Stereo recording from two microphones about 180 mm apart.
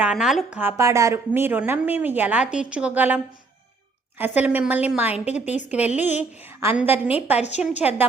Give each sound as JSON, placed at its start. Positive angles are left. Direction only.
{"t": 0.0, "sound": "a woman's voice", "side_deg": -5}
{"t": 4.2, "sound": "a woman's voice", "side_deg": -10}
{"t": 5.2, "sound": "a woman's voice", "side_deg": 40}
{"t": 6.1, "sound": "a woman's voice", "side_deg": -10}
{"t": 7.3, "sound": "a woman's voice", "side_deg": 40}
{"t": 7.6, "sound": "a woman's voice", "side_deg": -10}